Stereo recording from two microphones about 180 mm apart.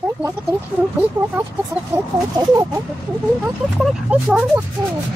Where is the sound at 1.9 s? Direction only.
20° right (ahead or behind).